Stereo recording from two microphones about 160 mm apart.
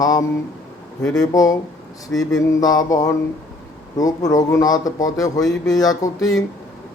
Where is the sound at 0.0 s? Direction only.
20° left (ahead or behind).